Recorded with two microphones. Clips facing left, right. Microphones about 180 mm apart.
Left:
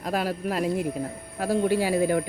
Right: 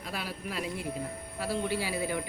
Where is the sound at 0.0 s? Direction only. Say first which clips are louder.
Left 11 dB; 45° left (ahead or behind).